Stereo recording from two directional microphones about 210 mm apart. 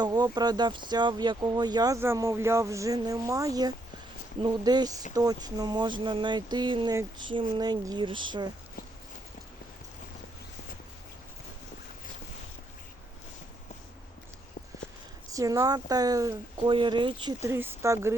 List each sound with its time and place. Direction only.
0.0 s speech: 20° right (ahead or behind)
15.3 s speech: 15° right (ahead or behind)